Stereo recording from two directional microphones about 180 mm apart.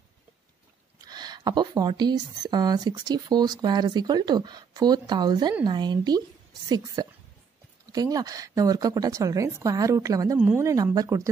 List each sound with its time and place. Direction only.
0.9 s speech: 20° right (ahead or behind)